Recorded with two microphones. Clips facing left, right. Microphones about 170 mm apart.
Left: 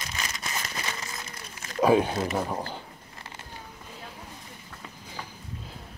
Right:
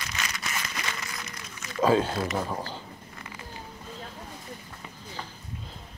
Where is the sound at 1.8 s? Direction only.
15° left (ahead or behind).